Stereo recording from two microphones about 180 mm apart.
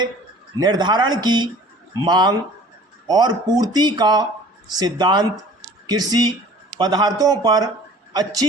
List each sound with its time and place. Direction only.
0.6 s speech: 25° right (ahead or behind)